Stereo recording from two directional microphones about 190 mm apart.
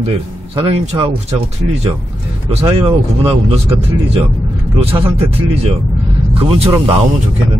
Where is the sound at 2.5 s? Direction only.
30° right (ahead or behind).